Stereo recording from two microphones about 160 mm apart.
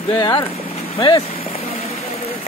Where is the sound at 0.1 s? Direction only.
30° left (ahead or behind).